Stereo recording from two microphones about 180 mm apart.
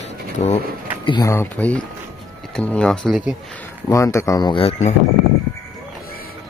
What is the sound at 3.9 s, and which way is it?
Speech, 15° left (ahead or behind).